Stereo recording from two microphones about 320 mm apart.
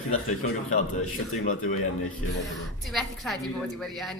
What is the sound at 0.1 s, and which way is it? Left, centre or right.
Speech, left.